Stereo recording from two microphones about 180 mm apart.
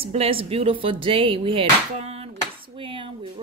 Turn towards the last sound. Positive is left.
turn(degrees=-30)  # may be behind; listen again after turning